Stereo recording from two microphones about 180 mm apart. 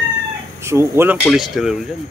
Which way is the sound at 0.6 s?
15° right (ahead or behind).